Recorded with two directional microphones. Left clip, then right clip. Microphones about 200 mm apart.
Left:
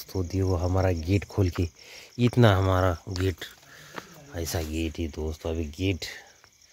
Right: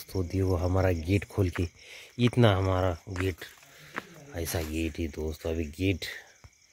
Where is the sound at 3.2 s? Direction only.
30° left (ahead or behind).